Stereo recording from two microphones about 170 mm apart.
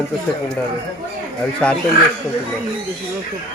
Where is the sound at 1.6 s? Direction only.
5° left (ahead or behind).